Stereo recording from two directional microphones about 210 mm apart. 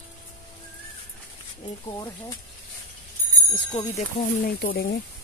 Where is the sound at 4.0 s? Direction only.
45° left (ahead or behind).